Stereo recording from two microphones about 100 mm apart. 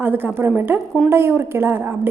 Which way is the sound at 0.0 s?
20° right (ahead or behind).